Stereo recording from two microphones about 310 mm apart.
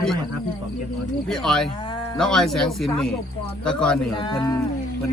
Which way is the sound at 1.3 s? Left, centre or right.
Centre.